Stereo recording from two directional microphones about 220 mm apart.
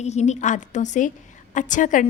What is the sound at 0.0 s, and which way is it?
A woman's voice, 30° left (ahead or behind).